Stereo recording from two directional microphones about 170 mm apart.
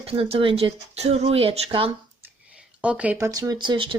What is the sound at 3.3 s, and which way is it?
Speech, 20° right (ahead or behind).